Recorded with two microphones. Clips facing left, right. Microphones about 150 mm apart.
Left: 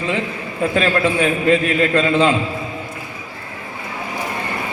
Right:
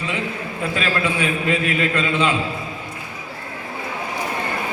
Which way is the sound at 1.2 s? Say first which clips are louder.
Left 5 dB; 40° left (ahead or behind).